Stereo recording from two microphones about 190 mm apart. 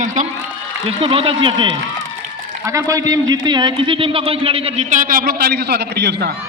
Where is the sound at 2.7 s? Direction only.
15° right (ahead or behind).